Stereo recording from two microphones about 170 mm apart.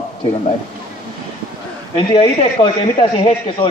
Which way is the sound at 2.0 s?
35° left (ahead or behind).